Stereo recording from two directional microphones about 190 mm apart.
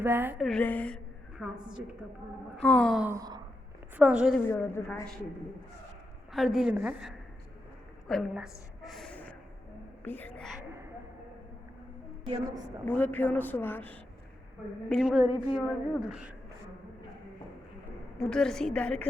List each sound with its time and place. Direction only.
0.0 s sigh: 10° right (ahead or behind)
0.3 s a woman's voice: 5° left (ahead or behind)
3.0 s sigh: 15° right (ahead or behind)
3.9 s a woman's voice: 5° right (ahead or behind)
4.4 s speech: 10° left (ahead or behind)
6.3 s a woman's voice: centre (ahead or behind)
10.7 s a sound: 15° right (ahead or behind)
12.8 s a woman's voice: 10° left (ahead or behind)
18.2 s a woman's voice: 5° left (ahead or behind)